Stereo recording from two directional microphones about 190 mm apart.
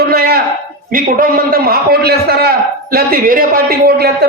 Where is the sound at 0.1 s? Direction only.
50° right (ahead or behind).